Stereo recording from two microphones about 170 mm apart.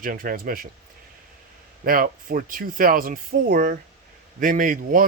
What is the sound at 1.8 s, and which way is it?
Speech, 55° right (ahead or behind).